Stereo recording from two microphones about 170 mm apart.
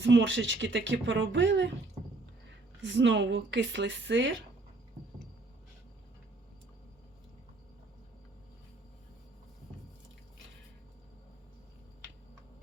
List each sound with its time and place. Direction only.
0.0 s speech: 90° right
2.8 s speech: 90° right